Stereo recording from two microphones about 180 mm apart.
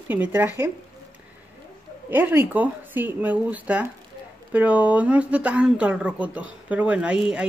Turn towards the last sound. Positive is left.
turn(degrees=-5)  # may be behind; listen again after turning